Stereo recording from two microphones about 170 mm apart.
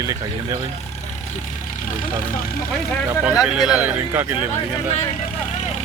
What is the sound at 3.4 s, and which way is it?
A man's voice, 5° right (ahead or behind).